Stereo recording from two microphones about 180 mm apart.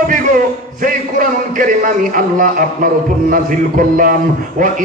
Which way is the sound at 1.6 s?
50° right (ahead or behind).